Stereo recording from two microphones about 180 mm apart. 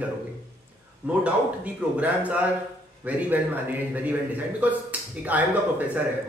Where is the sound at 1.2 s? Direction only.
10° right (ahead or behind).